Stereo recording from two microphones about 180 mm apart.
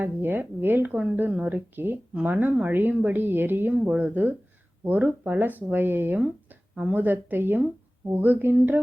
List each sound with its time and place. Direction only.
0.0 s speech: 10° right (ahead or behind)